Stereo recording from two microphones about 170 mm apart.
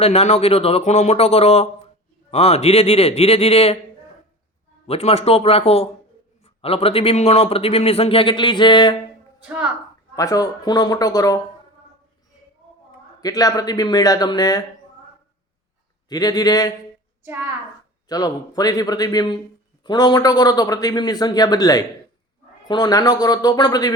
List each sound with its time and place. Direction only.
0.0 s speech: 40° left (ahead or behind)
4.9 s speech: 35° left (ahead or behind)
9.4 s speech: 5° right (ahead or behind)
10.2 s a man's voice: 20° left (ahead or behind)
13.2 s a man's voice: 20° left (ahead or behind)
16.0 s a man's voice: 20° left (ahead or behind)
18.1 s a man's voice: 20° left (ahead or behind)